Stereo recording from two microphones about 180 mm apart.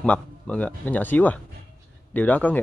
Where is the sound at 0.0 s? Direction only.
5° left (ahead or behind).